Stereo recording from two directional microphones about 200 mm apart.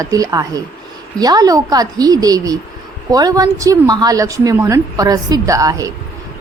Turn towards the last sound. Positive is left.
turn(degrees=-15)  # may be behind; listen again after turning